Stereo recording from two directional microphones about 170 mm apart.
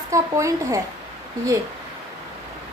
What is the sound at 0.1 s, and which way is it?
Speech, 20° right (ahead or behind).